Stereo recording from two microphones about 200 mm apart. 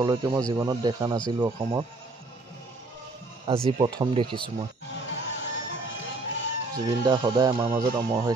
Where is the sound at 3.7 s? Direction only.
25° right (ahead or behind).